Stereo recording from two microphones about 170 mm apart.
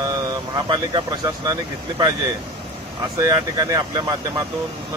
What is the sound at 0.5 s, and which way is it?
Speech, 25° right (ahead or behind).